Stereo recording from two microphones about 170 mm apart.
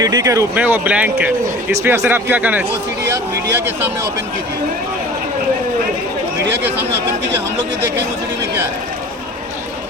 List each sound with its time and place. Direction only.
0.0 s speech: 20° right (ahead or behind)